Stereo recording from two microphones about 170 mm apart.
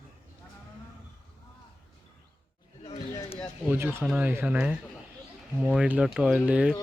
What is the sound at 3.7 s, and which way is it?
Speech, 15° right (ahead or behind).